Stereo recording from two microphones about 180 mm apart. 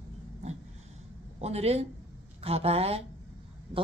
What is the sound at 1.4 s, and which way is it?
Speech, 35° right (ahead or behind).